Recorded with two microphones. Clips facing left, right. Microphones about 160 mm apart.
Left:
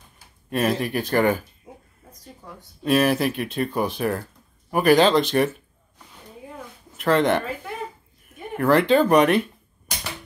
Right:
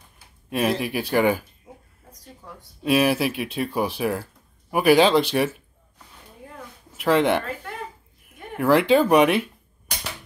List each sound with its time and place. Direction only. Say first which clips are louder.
0.5 s speech: even; 5° right (ahead or behind)
2.4 s speech: even; 5° right (ahead or behind)
6.9 s a woman's voice: even; 5° right (ahead or behind)